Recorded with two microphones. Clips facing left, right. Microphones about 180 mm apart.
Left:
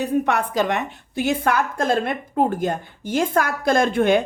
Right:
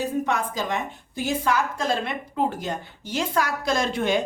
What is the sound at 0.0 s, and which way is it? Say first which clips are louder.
A woman's voice: left 4 dB; 65° left (ahead or behind).